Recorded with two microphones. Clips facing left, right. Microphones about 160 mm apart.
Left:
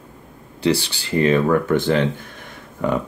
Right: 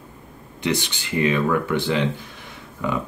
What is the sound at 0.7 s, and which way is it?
Speech, 35° left (ahead or behind).